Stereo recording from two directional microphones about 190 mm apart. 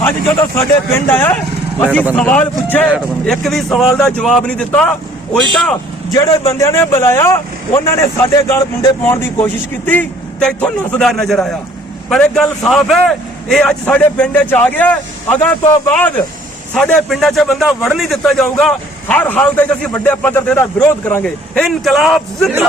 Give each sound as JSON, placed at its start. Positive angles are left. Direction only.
{"t": 0.0, "sound": "a man's voice", "side_deg": 15}
{"t": 6.1, "sound": "a man's voice", "side_deg": 20}